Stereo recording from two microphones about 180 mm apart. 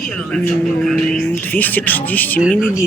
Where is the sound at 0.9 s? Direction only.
5° left (ahead or behind).